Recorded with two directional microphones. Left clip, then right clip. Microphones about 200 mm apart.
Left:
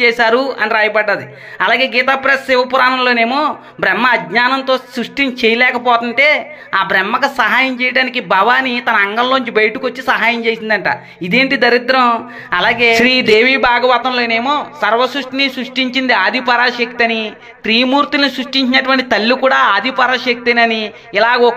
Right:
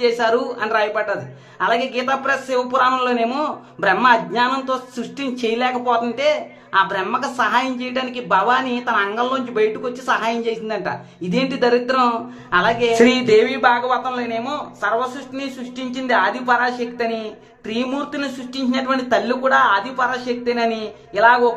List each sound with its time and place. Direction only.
0.0 s a man's voice: 10° left (ahead or behind)